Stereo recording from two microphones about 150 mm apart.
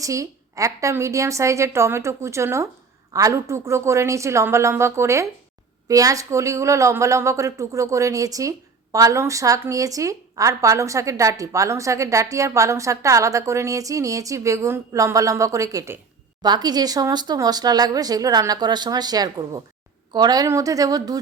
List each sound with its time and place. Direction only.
0.0 s speech: 20° right (ahead or behind)